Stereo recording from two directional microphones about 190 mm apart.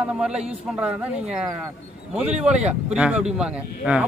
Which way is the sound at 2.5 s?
35° right (ahead or behind).